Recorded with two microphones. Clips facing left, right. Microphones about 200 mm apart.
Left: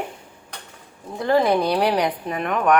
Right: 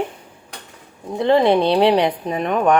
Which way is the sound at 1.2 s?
25° right (ahead or behind).